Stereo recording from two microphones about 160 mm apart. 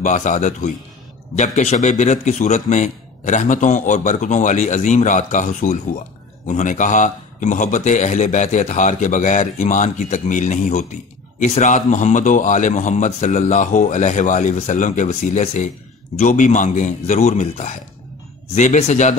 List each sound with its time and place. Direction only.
0.0 s a man's voice: 50° left (ahead or behind)